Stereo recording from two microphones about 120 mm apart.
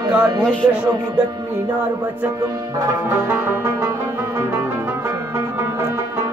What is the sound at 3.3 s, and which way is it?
Music, 20° right (ahead or behind).